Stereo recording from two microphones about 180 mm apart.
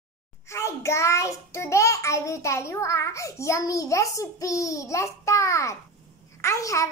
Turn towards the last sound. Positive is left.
turn(degrees=20)  # may be behind; listen again after turning